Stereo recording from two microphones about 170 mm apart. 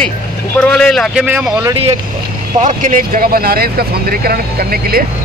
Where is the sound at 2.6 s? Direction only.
45° right (ahead or behind).